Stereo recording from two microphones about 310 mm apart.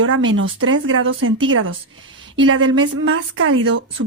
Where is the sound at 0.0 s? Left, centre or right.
Right.